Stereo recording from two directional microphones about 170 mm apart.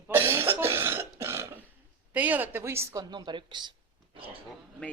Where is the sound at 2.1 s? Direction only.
10° right (ahead or behind); by 3.7 s 25° right (ahead or behind).